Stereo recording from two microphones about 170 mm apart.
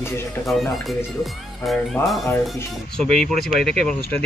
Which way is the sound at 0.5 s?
Centre (ahead or behind).